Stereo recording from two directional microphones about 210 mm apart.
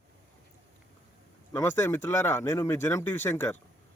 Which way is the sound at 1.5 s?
10° left (ahead or behind).